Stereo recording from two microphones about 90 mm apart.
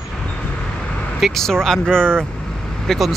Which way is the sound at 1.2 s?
5° left (ahead or behind).